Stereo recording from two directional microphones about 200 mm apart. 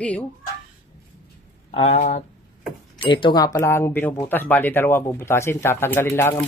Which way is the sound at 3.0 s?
25° left (ahead or behind).